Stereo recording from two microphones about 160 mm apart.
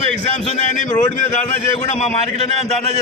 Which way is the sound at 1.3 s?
50° left (ahead or behind).